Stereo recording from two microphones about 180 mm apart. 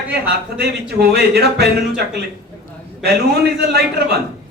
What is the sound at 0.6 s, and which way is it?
Speech, 60° right (ahead or behind).